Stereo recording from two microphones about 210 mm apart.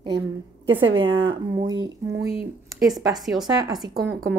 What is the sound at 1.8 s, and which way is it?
Speech, 70° right (ahead or behind).